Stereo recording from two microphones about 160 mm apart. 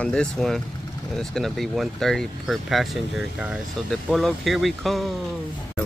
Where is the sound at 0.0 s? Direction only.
5° left (ahead or behind).